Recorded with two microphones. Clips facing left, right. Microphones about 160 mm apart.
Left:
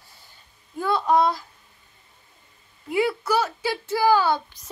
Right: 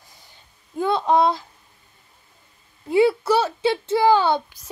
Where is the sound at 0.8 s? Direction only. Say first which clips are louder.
Right 2 dB; 25° right (ahead or behind).